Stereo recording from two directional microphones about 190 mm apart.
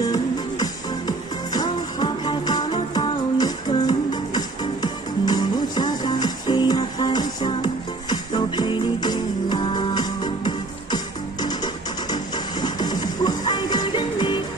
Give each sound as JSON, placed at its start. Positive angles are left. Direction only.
{"t": 0.0, "sound": "music", "side_deg": 20}